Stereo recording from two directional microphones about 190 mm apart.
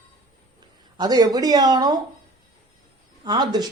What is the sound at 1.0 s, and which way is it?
Speech, 20° right (ahead or behind).